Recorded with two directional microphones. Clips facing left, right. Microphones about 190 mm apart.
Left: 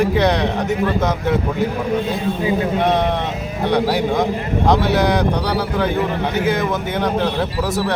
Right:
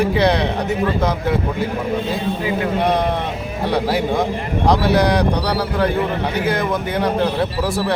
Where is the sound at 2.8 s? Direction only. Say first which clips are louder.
Left 1 dB; centre (ahead or behind).